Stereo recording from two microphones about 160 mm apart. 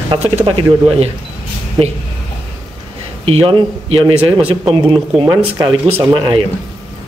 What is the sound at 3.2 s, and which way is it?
Speech, 35° right (ahead or behind).